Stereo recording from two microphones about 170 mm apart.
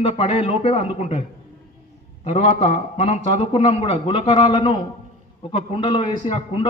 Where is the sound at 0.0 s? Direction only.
35° left (ahead or behind).